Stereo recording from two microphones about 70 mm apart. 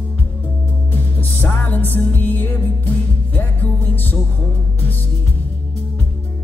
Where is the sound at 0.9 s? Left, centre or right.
Left.